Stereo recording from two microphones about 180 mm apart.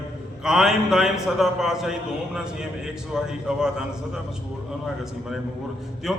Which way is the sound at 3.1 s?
5° right (ahead or behind).